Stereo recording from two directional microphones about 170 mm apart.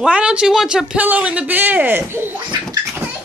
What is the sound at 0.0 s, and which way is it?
Speech, 5° right (ahead or behind).